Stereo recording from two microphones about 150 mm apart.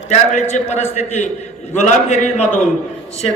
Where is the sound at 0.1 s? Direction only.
50° left (ahead or behind).